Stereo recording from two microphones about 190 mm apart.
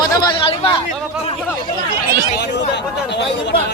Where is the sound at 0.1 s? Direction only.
25° left (ahead or behind).